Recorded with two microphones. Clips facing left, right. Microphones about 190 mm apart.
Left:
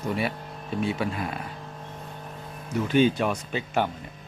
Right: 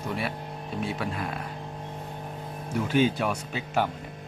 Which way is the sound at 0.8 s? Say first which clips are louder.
Left 4 dB; centre (ahead or behind).